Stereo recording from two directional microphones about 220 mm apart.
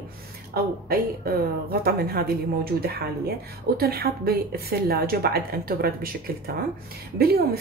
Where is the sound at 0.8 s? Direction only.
45° right (ahead or behind).